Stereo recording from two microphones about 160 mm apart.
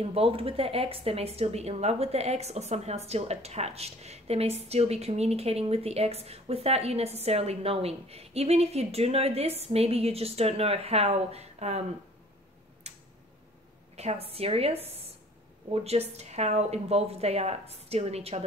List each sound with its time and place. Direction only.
0.0 s speech: 35° right (ahead or behind)
12.9 s tick-tock: 45° right (ahead or behind)
13.9 s speech: 40° right (ahead or behind)